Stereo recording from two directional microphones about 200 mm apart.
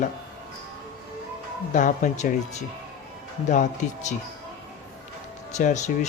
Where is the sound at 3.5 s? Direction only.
35° left (ahead or behind).